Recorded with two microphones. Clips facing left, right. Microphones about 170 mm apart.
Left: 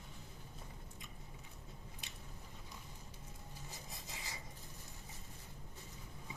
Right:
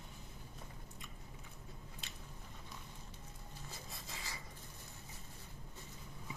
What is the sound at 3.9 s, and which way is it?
Zipper, 20° left (ahead or behind).